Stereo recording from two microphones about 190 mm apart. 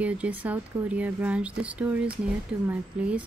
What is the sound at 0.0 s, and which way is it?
Speech, 10° right (ahead or behind).